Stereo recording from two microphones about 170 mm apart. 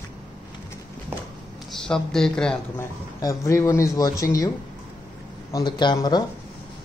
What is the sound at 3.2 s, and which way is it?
Speech, 20° left (ahead or behind).